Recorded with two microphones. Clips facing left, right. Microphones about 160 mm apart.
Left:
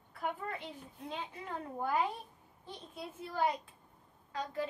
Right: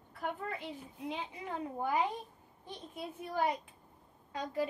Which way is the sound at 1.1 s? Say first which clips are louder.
Right 1 dB; 15° right (ahead or behind).